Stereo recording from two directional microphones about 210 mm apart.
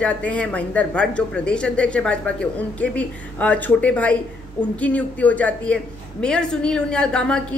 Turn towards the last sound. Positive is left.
turn(degrees=5)  # may be behind; listen again after turning